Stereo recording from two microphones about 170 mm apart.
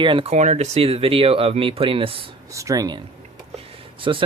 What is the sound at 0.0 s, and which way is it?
Speech, 30° right (ahead or behind).